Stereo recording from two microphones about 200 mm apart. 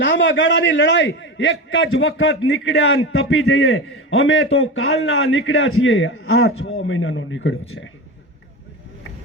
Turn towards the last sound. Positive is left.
turn(degrees=70)  # may be behind; listen again after turning